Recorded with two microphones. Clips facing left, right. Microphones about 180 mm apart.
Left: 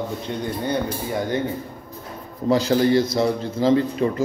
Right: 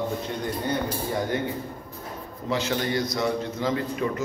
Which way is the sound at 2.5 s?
35° left (ahead or behind).